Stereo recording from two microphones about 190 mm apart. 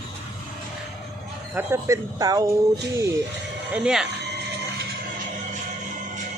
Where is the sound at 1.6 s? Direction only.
15° right (ahead or behind).